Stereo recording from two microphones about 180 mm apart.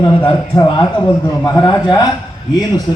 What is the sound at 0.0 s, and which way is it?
A man's voice, 25° left (ahead or behind).